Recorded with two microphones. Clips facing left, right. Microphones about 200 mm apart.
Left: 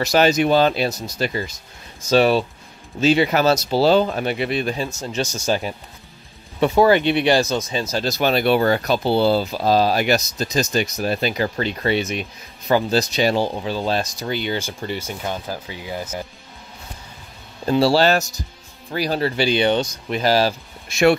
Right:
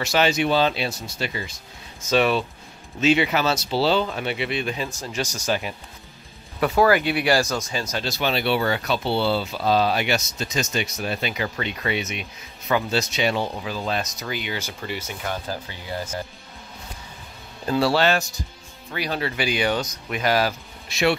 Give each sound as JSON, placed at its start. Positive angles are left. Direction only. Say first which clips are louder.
{"t": 0.0, "sound": "speech", "louder": "left 5 dB", "side_deg": 40}
{"t": 4.8, "sound": "speech", "louder": "left 4 dB", "side_deg": 25}
{"t": 7.9, "sound": "speech", "louder": "left 6 dB", "side_deg": 40}
{"t": 15.4, "sound": "speech", "louder": "left 2 dB", "side_deg": 10}
{"t": 17.6, "sound": "speech", "louder": "left 4 dB", "side_deg": 30}
{"t": 20.9, "sound": "speech", "louder": "left 6 dB", "side_deg": 45}